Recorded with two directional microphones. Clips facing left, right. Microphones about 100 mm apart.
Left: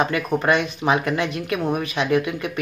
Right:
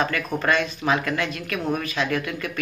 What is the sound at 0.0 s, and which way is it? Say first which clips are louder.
Speech: left 3 dB; 20° left (ahead or behind).